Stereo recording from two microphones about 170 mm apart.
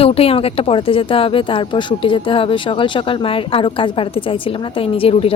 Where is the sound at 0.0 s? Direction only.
35° left (ahead or behind).